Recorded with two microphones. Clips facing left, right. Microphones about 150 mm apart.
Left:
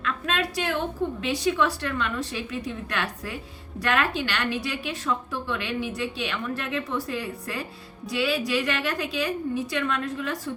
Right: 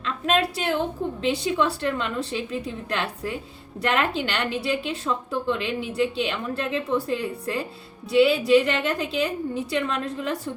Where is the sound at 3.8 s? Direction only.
25° right (ahead or behind).